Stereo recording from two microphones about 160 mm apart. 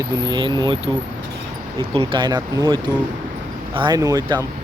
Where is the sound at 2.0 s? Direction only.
30° right (ahead or behind).